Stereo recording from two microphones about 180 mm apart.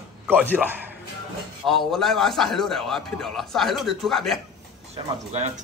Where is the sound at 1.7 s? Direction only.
Centre (ahead or behind).